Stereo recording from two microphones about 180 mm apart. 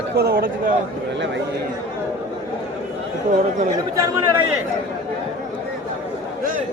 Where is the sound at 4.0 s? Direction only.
15° right (ahead or behind).